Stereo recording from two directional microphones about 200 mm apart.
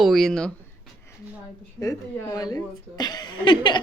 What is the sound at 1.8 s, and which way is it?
Speech, 20° left (ahead or behind).